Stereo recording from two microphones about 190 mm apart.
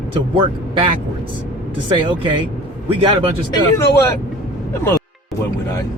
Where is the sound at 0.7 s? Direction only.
30° right (ahead or behind).